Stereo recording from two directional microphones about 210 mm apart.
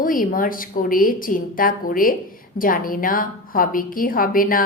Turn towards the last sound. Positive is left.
turn(degrees=40)  # may be behind; listen again after turning